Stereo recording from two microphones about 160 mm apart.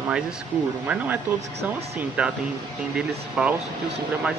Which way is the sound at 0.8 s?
10° right (ahead or behind).